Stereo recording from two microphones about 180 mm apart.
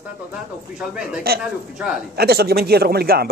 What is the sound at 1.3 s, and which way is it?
Speech, 60° right (ahead or behind).